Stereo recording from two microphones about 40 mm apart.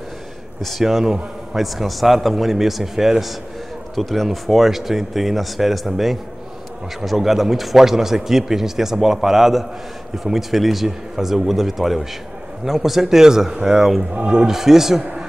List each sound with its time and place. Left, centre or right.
0.6 s a man's voice: centre
0.8 s a man's voice: centre
3.9 s a man's voice: centre
14.1 s a man's voice: right
14.4 s speech: centre